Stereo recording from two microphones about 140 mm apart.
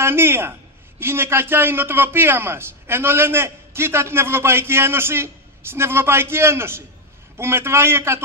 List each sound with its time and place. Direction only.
0.0 s a man's voice: 15° right (ahead or behind)